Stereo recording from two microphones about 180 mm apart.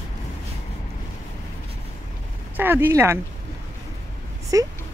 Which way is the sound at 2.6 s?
10° right (ahead or behind).